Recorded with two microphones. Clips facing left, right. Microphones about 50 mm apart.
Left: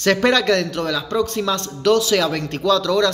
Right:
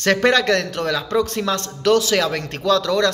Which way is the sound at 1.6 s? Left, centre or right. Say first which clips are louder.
Even; right.